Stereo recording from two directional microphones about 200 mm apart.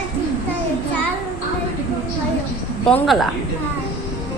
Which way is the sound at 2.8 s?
Centre (ahead or behind).